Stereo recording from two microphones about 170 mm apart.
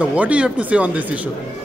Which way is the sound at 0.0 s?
5° right (ahead or behind).